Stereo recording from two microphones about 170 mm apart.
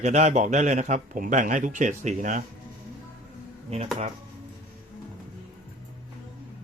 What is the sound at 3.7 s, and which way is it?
Speech, 40° right (ahead or behind).